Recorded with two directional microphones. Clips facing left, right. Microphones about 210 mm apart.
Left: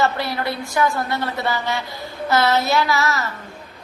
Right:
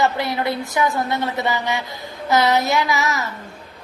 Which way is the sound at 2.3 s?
15° right (ahead or behind).